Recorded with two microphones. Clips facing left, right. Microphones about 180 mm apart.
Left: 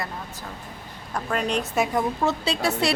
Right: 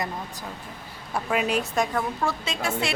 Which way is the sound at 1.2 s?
5° right (ahead or behind).